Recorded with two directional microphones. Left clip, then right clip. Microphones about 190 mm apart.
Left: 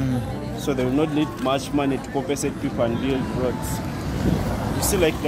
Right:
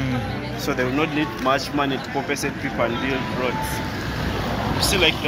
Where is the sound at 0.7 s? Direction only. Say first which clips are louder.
Even; 65° left (ahead or behind).